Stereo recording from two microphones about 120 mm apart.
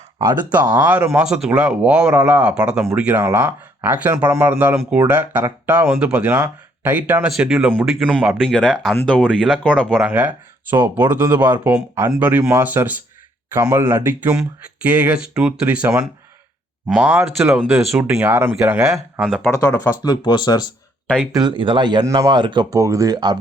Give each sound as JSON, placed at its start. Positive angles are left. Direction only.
{"t": 0.5, "sound": "speech", "side_deg": -15}
{"t": 10.0, "sound": "speech", "side_deg": -15}
{"t": 16.9, "sound": "speech", "side_deg": -10}
{"t": 18.1, "sound": "speech", "side_deg": -15}
{"t": 19.8, "sound": "speech", "side_deg": 30}
{"t": 21.3, "sound": "speech", "side_deg": -40}